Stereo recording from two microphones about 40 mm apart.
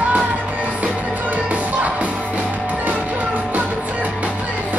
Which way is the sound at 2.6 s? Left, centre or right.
Right.